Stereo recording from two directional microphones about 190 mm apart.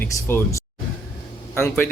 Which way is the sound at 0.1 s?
15° left (ahead or behind).